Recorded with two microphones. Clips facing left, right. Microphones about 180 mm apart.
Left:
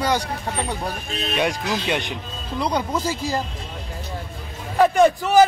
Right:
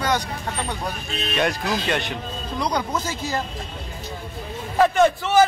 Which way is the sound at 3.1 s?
35° left (ahead or behind).